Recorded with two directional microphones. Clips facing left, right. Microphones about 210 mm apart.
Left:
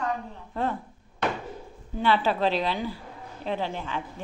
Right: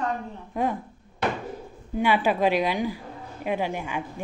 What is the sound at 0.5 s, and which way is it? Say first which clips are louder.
Speech: right 2 dB; 15° right (ahead or behind).